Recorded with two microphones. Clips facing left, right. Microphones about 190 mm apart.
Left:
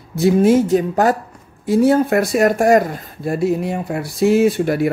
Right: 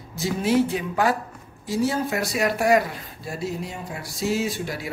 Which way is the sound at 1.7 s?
55° left (ahead or behind).